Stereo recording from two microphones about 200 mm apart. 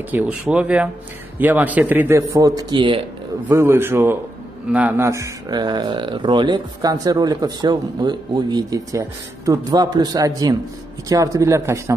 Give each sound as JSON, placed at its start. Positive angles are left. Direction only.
{"t": 0.1, "sound": "a man's voice", "side_deg": -5}
{"t": 3.4, "sound": "a man's voice", "side_deg": -10}